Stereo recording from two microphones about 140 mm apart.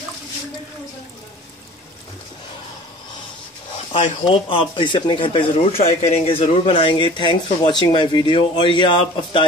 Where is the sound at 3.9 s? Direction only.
40° left (ahead or behind).